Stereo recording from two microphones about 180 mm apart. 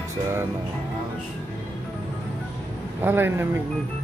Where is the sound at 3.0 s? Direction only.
10° right (ahead or behind).